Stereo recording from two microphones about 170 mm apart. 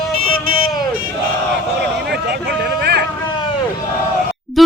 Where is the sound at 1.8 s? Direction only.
70° right (ahead or behind).